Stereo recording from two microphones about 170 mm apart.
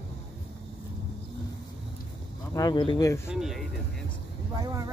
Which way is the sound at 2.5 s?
25° left (ahead or behind).